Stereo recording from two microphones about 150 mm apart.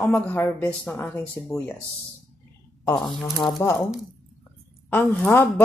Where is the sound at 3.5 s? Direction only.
20° left (ahead or behind).